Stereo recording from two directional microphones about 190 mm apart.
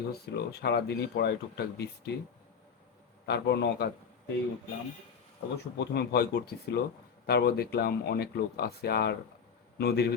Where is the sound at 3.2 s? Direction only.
65° left (ahead or behind).